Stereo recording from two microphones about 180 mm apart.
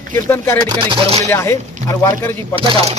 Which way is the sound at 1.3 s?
15° left (ahead or behind).